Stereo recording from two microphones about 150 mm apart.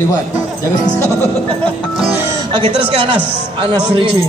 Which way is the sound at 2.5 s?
40° right (ahead or behind).